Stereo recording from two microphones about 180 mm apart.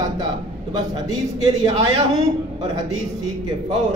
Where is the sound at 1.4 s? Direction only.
30° right (ahead or behind).